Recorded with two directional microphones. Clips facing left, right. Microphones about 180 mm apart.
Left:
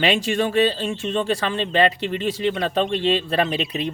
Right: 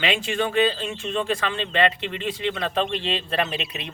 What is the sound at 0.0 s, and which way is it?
A man's voice, 35° left (ahead or behind).